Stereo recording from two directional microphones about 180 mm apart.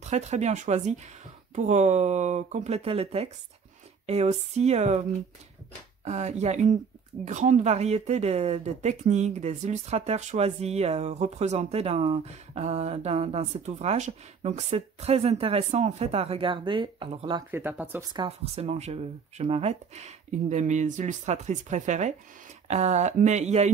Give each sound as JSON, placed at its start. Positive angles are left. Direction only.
{"t": 0.0, "sound": "speech", "side_deg": -40}
{"t": 6.0, "sound": "speech", "side_deg": -40}
{"t": 17.5, "sound": "speech", "side_deg": -10}
{"t": 18.1, "sound": "speech", "side_deg": -25}
{"t": 18.5, "sound": "speech", "side_deg": -35}